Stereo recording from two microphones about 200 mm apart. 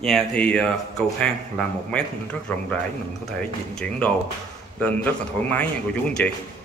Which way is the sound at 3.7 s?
5° left (ahead or behind).